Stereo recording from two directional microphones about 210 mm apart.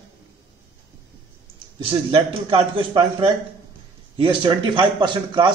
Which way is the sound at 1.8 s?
25° right (ahead or behind).